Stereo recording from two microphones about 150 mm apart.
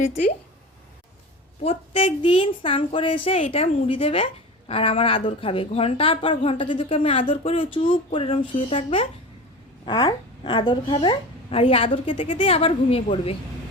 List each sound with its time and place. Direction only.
0.0 s speech: 50° left (ahead or behind)
1.6 s a woman's voice: 40° left (ahead or behind)